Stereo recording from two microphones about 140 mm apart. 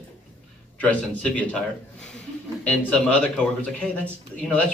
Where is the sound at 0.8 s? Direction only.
10° left (ahead or behind).